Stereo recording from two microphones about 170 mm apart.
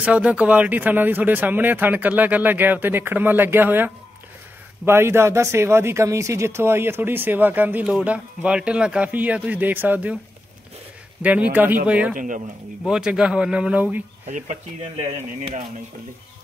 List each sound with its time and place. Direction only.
0.0 s speech: 5° right (ahead or behind)
11.2 s speech: 10° right (ahead or behind)
12.2 s speech: 50° right (ahead or behind)
12.8 s speech: 5° right (ahead or behind)
14.2 s speech: 40° right (ahead or behind)